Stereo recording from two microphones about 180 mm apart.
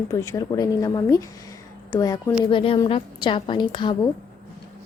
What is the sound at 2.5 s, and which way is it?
Speech, 30° left (ahead or behind).